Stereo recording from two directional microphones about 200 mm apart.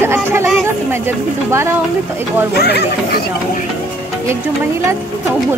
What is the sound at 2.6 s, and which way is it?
Speech, 55° left (ahead or behind).